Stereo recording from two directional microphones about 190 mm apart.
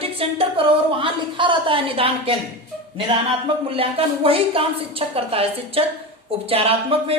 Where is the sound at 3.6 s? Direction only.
30° right (ahead or behind).